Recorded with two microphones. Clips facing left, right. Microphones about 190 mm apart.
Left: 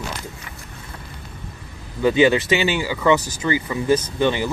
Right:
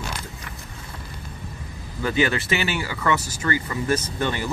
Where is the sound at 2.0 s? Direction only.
20° left (ahead or behind).